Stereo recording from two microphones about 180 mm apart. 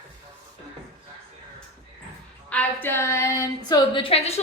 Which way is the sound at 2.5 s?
10° left (ahead or behind).